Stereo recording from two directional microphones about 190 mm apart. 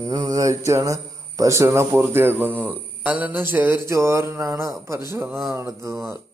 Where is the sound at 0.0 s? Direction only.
20° right (ahead or behind).